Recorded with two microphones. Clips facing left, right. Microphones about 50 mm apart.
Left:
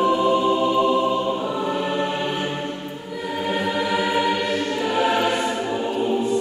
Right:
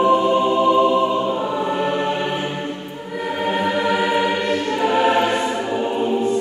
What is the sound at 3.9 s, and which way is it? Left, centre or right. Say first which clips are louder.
Choir: right 1 dB; right.